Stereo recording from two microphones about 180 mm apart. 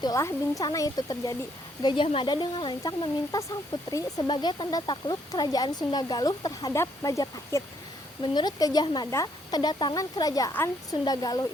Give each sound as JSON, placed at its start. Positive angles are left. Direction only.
{"t": 0.0, "sound": "speech", "side_deg": 15}